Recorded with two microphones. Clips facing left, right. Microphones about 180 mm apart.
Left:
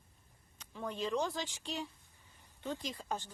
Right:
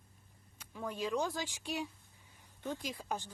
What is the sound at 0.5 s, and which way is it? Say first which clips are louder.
Speech: even; 5° right (ahead or behind).